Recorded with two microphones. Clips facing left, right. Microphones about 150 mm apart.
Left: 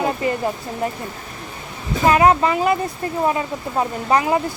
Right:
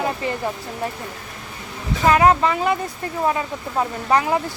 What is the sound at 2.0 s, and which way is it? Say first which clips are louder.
Speech: left 1 dB; 10° left (ahead or behind).